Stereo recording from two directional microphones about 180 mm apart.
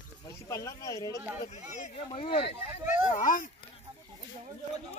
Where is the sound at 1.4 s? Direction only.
40° left (ahead or behind).